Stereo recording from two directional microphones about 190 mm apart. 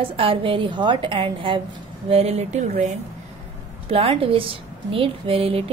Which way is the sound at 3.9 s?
30° right (ahead or behind).